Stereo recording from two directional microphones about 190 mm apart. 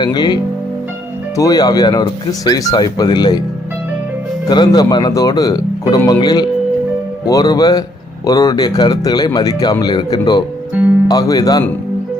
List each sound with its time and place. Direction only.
0.0 s speech: 20° left (ahead or behind)
1.4 s speech: 20° left (ahead or behind)
4.4 s speech: 20° left (ahead or behind)